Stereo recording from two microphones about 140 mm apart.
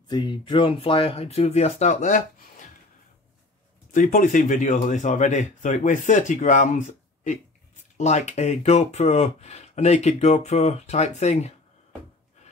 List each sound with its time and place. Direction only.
0.1 s speech: 30° left (ahead or behind); by 2.7 s 65° left (ahead or behind)
3.9 s a man's voice: 70° left (ahead or behind)